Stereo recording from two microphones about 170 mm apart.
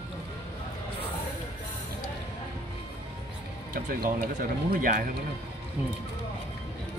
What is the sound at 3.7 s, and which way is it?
Speech, 60° right (ahead or behind).